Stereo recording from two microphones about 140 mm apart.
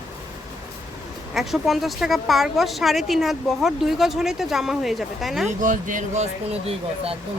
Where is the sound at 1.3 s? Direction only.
Centre (ahead or behind).